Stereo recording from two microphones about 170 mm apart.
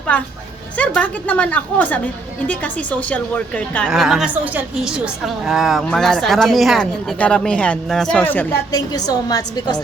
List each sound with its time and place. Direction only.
0.1 s a woman's voice: 5° left (ahead or behind)
3.8 s a woman's voice: centre (ahead or behind)
8.7 s a woman's voice: 20° left (ahead or behind)